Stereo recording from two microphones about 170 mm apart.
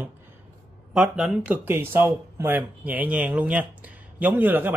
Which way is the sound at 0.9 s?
5° right (ahead or behind).